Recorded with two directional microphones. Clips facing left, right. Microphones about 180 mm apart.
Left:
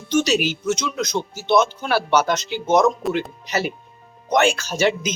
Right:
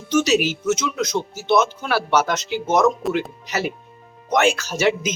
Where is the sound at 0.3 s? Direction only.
5° right (ahead or behind).